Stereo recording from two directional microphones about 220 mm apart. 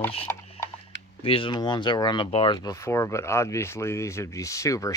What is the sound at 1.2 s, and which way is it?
Speech, 25° left (ahead or behind).